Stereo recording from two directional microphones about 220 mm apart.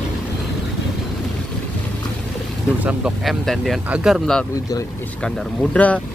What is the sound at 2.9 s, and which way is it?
Speech, centre (ahead or behind).